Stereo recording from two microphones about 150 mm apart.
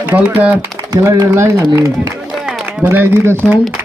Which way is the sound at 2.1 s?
5° right (ahead or behind).